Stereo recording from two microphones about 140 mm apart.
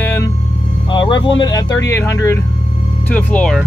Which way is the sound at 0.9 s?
35° left (ahead or behind).